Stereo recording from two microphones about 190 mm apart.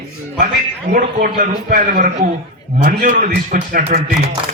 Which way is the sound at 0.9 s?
45° right (ahead or behind).